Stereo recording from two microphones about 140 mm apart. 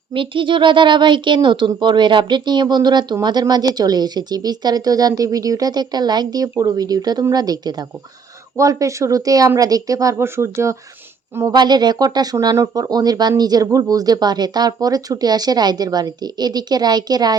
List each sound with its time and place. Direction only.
0.1 s speech: 35° right (ahead or behind)